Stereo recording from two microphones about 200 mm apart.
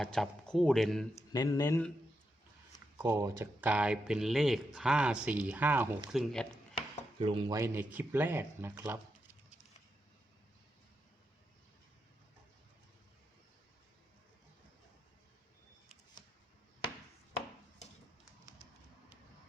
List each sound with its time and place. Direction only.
0.0 s speech: centre (ahead or behind)
1.1 s speech: 15° left (ahead or behind)
3.0 s speech: 10° right (ahead or behind)
6.1 s speech: centre (ahead or behind)
7.2 s speech: 25° right (ahead or behind)
7.5 s speech: 10° right (ahead or behind)